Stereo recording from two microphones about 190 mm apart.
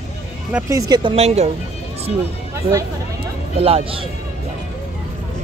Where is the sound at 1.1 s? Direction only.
35° right (ahead or behind).